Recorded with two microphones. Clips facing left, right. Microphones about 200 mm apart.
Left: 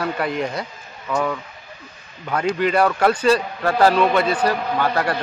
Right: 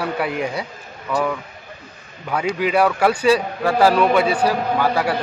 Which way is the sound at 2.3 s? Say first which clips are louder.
Even; 5° right (ahead or behind).